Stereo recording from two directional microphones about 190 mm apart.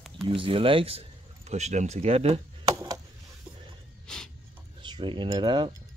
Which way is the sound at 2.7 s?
20° right (ahead or behind).